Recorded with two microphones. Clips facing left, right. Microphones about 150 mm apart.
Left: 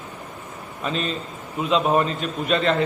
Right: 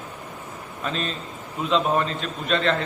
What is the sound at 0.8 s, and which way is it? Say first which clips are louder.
A man's voice: left 3 dB; 5° left (ahead or behind).